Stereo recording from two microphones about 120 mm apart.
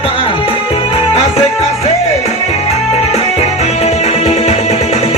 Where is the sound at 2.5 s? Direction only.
60° left (ahead or behind).